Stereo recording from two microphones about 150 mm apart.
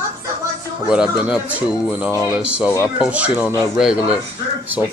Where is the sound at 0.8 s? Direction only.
5° right (ahead or behind).